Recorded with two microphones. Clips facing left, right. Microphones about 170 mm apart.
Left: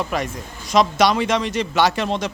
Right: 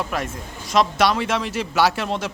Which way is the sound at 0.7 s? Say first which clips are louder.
Left 2 dB; centre (ahead or behind).